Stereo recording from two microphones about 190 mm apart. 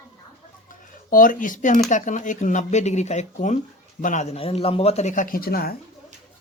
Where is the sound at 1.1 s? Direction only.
45° left (ahead or behind).